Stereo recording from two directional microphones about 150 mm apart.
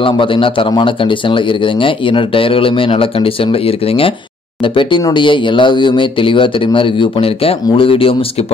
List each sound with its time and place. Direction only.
0.0 s speech: 35° left (ahead or behind)